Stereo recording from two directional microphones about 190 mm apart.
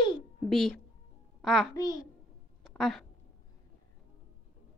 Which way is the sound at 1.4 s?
Centre (ahead or behind).